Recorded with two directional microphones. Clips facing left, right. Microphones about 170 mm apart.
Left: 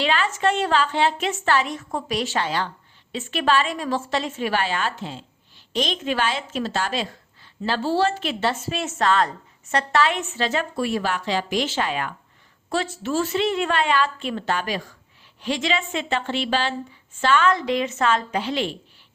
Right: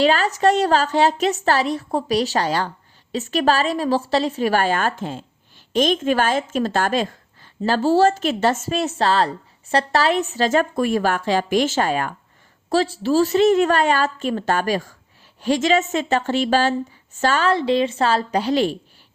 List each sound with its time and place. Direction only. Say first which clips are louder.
0.0 s a woman's voice: right 5 dB; 40° right (ahead or behind)
12.7 s a woman's voice: right 6 dB; 35° right (ahead or behind)